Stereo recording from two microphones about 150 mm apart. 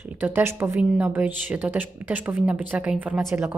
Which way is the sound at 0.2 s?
15° right (ahead or behind).